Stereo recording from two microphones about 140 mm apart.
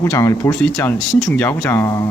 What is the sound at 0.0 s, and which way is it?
Speech, 20° left (ahead or behind).